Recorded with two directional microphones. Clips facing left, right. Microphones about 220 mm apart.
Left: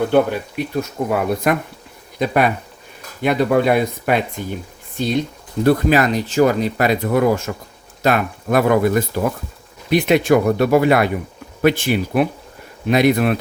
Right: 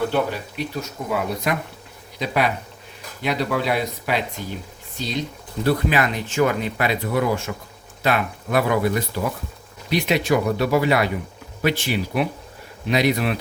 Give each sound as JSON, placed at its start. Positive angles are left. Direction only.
{"t": 0.1, "sound": "speech", "side_deg": 55}
{"t": 5.6, "sound": "speech", "side_deg": 40}